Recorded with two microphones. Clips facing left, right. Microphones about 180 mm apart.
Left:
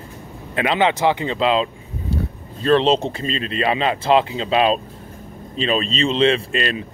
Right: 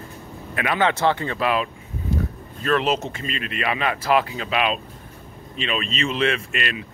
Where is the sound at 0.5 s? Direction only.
20° left (ahead or behind).